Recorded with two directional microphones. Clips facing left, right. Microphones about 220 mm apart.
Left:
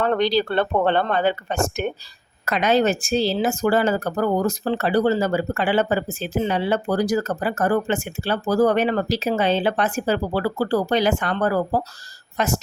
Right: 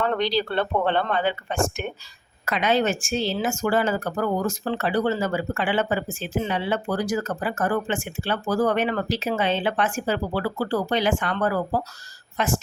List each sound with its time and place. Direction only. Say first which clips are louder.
0.0 s speech: left 4 dB; 45° left (ahead or behind)